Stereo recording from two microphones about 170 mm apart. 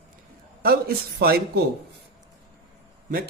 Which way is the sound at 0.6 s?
65° right (ahead or behind).